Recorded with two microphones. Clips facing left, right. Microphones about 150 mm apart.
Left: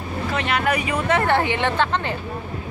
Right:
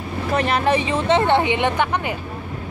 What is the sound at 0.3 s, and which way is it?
Speech, 35° right (ahead or behind).